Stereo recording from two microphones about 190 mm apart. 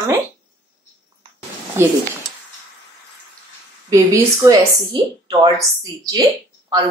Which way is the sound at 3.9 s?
15° right (ahead or behind).